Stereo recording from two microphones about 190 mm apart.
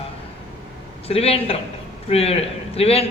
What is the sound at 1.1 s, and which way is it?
Speech, 30° left (ahead or behind).